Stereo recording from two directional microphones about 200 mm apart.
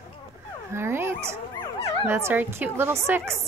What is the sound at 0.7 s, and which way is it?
Speech, 10° right (ahead or behind).